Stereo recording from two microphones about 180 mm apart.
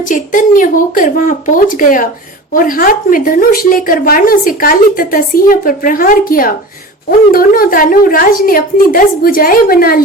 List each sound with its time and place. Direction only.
0.1 s speech: 45° left (ahead or behind)